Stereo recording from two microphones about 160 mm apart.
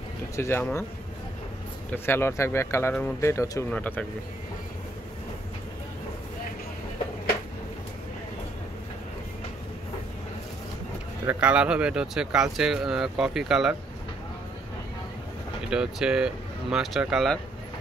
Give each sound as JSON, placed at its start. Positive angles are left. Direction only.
{"t": 0.4, "sound": "speech", "side_deg": 15}
{"t": 1.9, "sound": "speech", "side_deg": 15}
{"t": 11.2, "sound": "speech", "side_deg": -10}
{"t": 15.7, "sound": "speech", "side_deg": -5}